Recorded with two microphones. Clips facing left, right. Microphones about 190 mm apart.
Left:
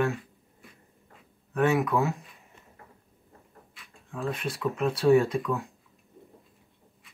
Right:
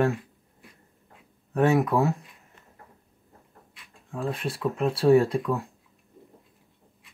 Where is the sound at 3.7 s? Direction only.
Centre (ahead or behind).